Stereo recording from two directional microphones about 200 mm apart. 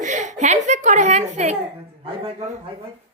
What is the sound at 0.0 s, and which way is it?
A woman's voice, 35° right (ahead or behind).